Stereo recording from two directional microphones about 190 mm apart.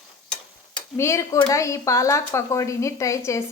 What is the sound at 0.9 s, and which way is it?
Speech, 15° left (ahead or behind).